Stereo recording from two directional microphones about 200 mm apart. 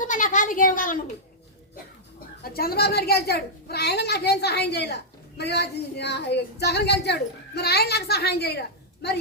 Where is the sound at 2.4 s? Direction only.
50° left (ahead or behind).